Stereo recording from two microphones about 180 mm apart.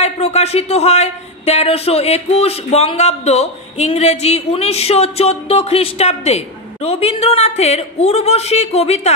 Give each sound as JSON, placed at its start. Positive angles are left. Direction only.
{"t": 0.0, "sound": "speech", "side_deg": 35}